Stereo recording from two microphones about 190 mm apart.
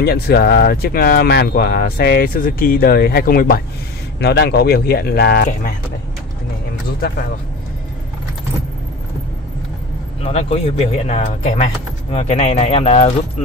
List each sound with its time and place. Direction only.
0.0 s speech: 55° left (ahead or behind)
10.2 s speech: 35° left (ahead or behind)